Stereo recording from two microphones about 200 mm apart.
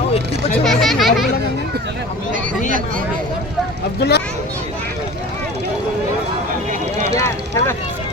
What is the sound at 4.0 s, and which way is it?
Speech, 55° left (ahead or behind).